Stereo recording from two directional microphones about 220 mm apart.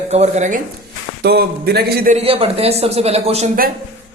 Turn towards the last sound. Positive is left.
turn(degrees=-35)  # may be behind; listen again after turning